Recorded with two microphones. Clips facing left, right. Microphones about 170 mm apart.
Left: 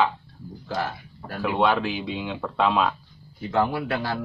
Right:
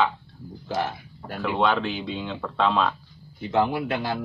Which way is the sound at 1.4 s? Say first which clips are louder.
Left 1 dB; 5° left (ahead or behind).